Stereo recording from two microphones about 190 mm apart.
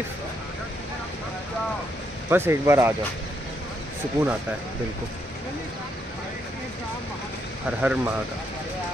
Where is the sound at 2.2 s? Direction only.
10° right (ahead or behind).